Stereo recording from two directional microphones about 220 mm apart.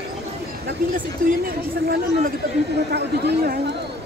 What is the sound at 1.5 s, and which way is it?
Chatter, 40° right (ahead or behind).